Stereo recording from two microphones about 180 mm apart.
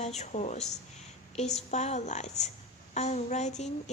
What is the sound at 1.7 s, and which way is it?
A woman's voice, 40° left (ahead or behind).